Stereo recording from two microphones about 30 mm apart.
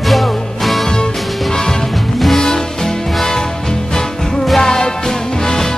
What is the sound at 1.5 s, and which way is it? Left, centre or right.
Music, centre.